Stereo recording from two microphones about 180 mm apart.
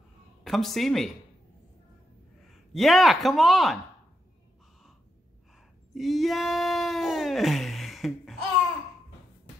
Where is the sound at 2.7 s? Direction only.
Centre (ahead or behind).